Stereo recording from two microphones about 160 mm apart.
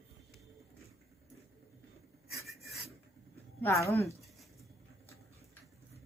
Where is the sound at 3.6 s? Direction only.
15° left (ahead or behind).